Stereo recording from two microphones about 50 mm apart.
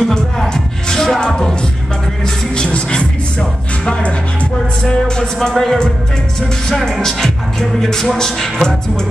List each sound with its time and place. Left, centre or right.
0.0 s music: centre
2.5 s music: centre
7.8 s a man's voice: centre